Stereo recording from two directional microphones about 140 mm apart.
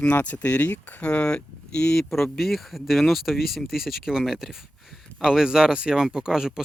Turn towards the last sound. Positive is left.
turn(degrees=-5)  # may be behind; listen again after turning